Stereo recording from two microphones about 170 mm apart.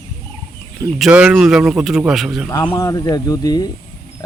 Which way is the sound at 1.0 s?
5° right (ahead or behind).